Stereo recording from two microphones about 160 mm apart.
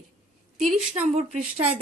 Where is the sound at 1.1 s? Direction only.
45° right (ahead or behind).